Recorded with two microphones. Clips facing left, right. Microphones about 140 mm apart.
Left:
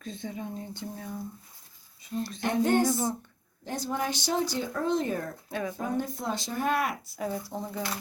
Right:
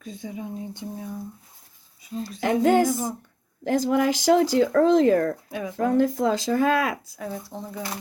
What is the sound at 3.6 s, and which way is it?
Speech, 90° right.